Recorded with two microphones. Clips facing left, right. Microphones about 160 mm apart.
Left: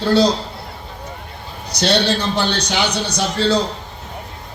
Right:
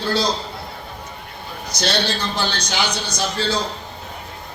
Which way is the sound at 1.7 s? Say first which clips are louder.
Left 5 dB; 65° left (ahead or behind).